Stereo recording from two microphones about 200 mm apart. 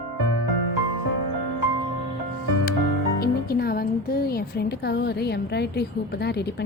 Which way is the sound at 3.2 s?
50° left (ahead or behind).